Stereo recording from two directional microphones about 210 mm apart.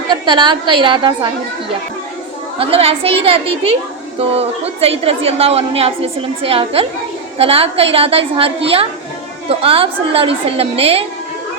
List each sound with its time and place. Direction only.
0.1 s a woman's voice: 20° right (ahead or behind)
2.6 s a woman's voice: 25° right (ahead or behind)